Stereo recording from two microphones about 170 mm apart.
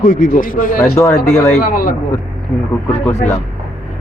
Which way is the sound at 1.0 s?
20° left (ahead or behind).